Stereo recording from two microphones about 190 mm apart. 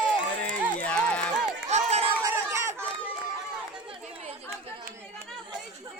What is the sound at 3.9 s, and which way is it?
Chatter, 30° right (ahead or behind).